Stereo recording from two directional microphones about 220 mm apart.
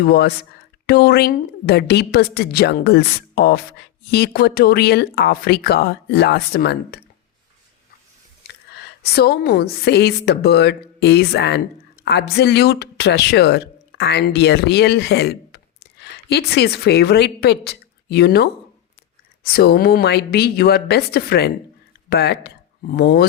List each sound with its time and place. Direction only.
0.0 s a woman's voice: 45° left (ahead or behind)
8.4 s a woman's voice: 45° left (ahead or behind)
19.5 s a woman's voice: 45° left (ahead or behind)